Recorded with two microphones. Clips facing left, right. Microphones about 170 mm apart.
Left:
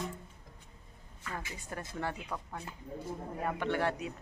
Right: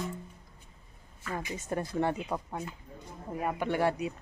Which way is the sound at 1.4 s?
20° right (ahead or behind).